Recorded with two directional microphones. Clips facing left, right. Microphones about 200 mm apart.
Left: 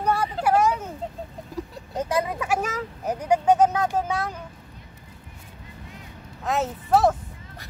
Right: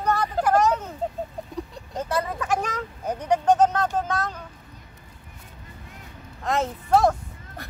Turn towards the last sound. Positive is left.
turn(degrees=5)  # may be behind; listen again after turning